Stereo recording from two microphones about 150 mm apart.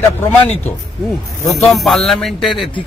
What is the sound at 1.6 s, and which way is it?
Speech, centre (ahead or behind).